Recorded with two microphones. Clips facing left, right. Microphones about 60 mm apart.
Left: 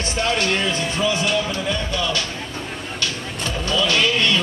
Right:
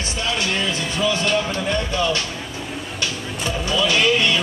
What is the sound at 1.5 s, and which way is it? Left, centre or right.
Speech, right.